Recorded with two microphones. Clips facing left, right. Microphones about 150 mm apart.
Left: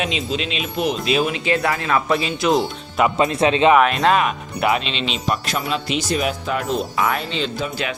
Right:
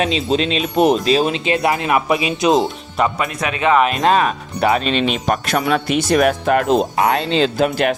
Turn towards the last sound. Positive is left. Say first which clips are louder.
# right 8 dB
turn(degrees=-80)